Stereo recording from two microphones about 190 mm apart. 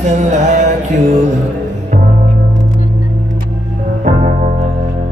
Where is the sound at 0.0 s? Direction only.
40° right (ahead or behind).